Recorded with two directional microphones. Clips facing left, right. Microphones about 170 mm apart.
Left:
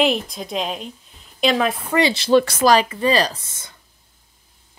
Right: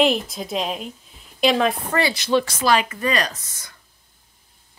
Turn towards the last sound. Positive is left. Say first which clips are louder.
# left 4 dB
turn(degrees=25)  # may be behind; listen again after turning